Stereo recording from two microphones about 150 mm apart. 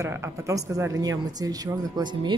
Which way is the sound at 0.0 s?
20° right (ahead or behind).